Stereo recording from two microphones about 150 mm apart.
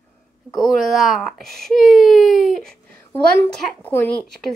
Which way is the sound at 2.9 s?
15° left (ahead or behind).